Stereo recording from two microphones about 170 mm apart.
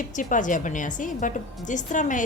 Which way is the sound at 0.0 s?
50° left (ahead or behind).